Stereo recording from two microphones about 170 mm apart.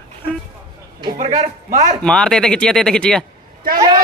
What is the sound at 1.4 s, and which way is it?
Speech, 45° right (ahead or behind).